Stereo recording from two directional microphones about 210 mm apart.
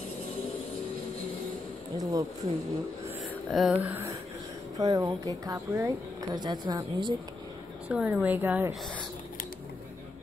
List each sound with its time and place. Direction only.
2.0 s a woman's voice: 15° right (ahead or behind)
3.2 s a woman's voice: centre (ahead or behind); by 7.2 s 20° right (ahead or behind)
7.9 s a woman's voice: 5° right (ahead or behind)